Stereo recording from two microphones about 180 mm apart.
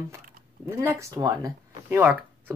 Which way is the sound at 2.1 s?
10° right (ahead or behind).